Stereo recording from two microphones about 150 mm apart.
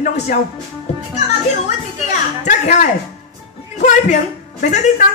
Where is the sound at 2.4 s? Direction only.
55° left (ahead or behind).